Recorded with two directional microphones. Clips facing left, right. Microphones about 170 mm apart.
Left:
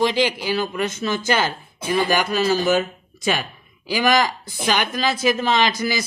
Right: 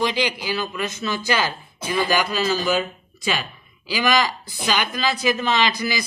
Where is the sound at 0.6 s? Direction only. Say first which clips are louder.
Left 3 dB; 50° left (ahead or behind).